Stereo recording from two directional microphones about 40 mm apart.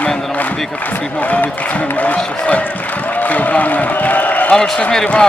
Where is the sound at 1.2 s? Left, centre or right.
Left.